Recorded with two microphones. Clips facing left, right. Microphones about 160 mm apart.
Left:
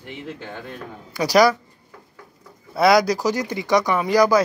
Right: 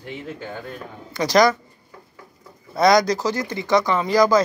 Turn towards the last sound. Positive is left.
turn(degrees=10)  # may be behind; listen again after turning